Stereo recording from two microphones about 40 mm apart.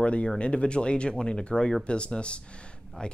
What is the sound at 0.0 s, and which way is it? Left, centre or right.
Speech, left.